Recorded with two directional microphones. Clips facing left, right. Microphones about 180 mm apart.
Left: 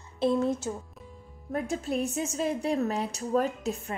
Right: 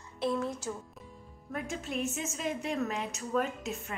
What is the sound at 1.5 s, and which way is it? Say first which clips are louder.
A woman's voice: left 6 dB; 35° left (ahead or behind).